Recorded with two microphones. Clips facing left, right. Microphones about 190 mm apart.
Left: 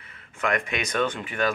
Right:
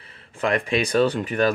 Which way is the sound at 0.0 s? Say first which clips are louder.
Right 4 dB; 30° right (ahead or behind).